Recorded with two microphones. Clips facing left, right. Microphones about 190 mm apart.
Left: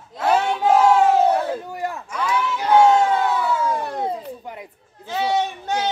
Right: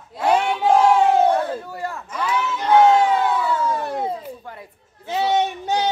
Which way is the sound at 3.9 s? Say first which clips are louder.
Even; 5° right (ahead or behind).